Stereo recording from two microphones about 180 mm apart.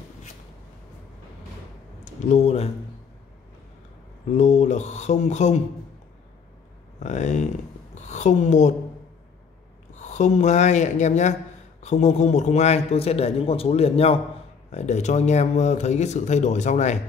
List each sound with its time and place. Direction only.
2.3 s a man's voice: 35° left (ahead or behind)
4.3 s a man's voice: 40° left (ahead or behind)
7.0 s speech: 40° left (ahead or behind)
9.9 s a man's voice: 40° left (ahead or behind)